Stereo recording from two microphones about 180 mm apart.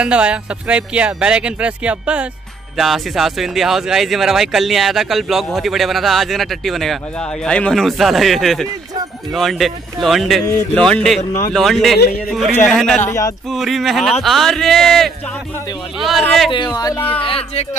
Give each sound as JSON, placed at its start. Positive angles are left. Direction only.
{"t": 0.0, "sound": "speech", "side_deg": -5}
{"t": 16.5, "sound": "speech", "side_deg": 25}